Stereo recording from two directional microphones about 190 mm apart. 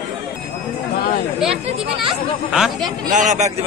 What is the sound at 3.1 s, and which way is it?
Speech, 40° right (ahead or behind).